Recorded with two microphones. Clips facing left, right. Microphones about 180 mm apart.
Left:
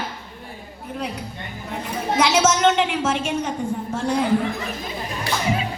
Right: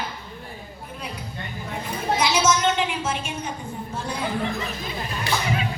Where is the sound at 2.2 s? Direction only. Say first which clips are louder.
Left 5 dB; 75° left (ahead or behind).